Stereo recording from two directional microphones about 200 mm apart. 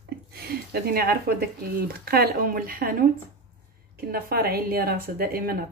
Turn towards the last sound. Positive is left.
turn(degrees=-50)  # may be behind; listen again after turning